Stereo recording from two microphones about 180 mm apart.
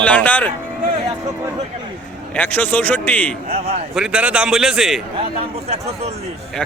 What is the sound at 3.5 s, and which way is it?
Speech, 35° right (ahead or behind).